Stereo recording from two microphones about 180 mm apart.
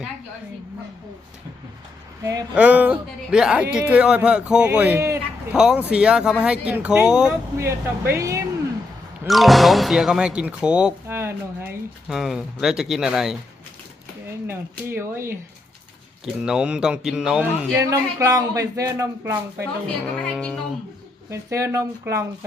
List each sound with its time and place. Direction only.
2.2 s speech: 20° right (ahead or behind)
2.6 s speech: 10° right (ahead or behind)
5.5 s speech: 5° right (ahead or behind)
9.2 s speech: centre (ahead or behind)
14.4 s speech: 10° right (ahead or behind)
18.2 s speech: 20° right (ahead or behind)
20.1 s speech: 5° left (ahead or behind)
21.2 s speech: 15° right (ahead or behind)